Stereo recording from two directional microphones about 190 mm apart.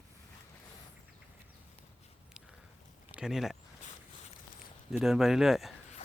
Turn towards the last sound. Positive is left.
turn(degrees=0)  # may be behind; listen again after turning